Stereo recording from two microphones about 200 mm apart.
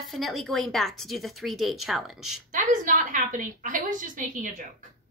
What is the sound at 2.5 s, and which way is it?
A woman's voice, 40° right (ahead or behind).